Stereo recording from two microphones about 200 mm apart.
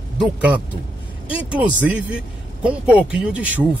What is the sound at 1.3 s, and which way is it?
Speech, 5° right (ahead or behind).